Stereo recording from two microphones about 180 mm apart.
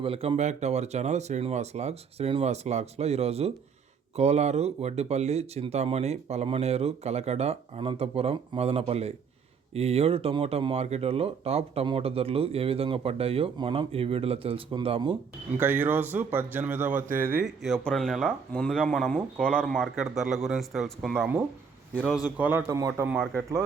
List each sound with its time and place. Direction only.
0.0 s speech: 30° right (ahead or behind)
15.5 s speech: 10° right (ahead or behind)
22.4 s speech: 10° right (ahead or behind)
23.1 s speech: centre (ahead or behind)